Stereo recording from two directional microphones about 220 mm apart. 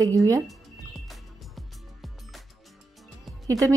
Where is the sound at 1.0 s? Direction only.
Centre (ahead or behind).